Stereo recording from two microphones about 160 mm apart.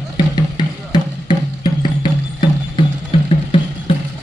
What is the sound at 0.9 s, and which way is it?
Music, 30° left (ahead or behind).